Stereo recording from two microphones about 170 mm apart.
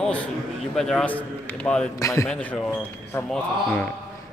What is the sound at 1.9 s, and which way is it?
Speech, 20° left (ahead or behind).